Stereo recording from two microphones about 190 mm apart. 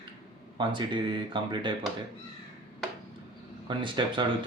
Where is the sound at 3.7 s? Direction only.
25° right (ahead or behind).